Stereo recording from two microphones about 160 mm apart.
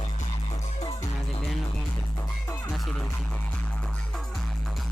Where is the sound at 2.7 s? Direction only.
5° left (ahead or behind).